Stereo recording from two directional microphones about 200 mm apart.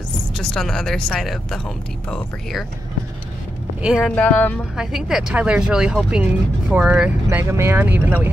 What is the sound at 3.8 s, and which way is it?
Speech, 5° right (ahead or behind).